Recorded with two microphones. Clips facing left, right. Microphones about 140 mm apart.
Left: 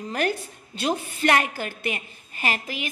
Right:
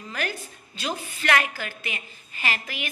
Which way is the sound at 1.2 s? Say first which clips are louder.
Left 1 dB; 40° left (ahead or behind).